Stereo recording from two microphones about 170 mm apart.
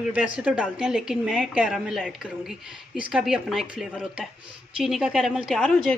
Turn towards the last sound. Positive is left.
turn(degrees=5)  # may be behind; listen again after turning